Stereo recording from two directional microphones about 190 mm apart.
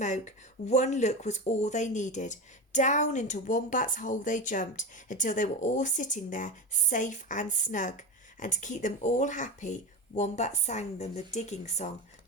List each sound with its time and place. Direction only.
0.0 s speech: 40° left (ahead or behind)